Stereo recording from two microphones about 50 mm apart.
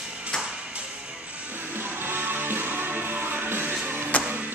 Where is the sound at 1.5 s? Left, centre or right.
Right.